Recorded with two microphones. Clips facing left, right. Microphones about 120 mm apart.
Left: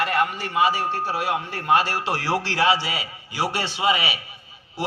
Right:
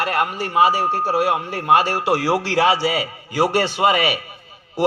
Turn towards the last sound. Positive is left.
turn(degrees=-55)  # may be behind; listen again after turning